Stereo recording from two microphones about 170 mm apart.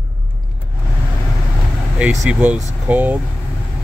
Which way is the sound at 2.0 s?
5° right (ahead or behind).